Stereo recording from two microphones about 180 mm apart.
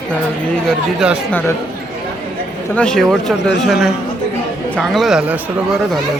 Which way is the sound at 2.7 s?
5° left (ahead or behind).